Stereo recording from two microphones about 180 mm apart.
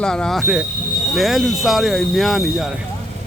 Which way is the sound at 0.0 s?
5° left (ahead or behind).